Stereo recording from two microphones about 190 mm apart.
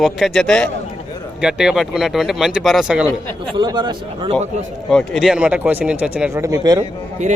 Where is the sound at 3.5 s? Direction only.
25° right (ahead or behind).